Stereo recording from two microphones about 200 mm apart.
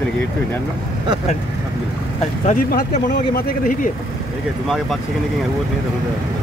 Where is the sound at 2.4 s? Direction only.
40° left (ahead or behind).